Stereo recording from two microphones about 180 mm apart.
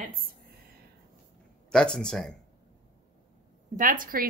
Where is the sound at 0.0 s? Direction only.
55° right (ahead or behind).